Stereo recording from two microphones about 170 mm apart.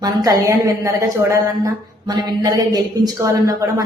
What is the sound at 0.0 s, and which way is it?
A woman's voice, 20° right (ahead or behind).